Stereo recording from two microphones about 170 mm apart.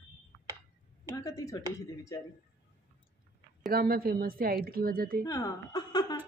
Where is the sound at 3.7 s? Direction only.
60° right (ahead or behind).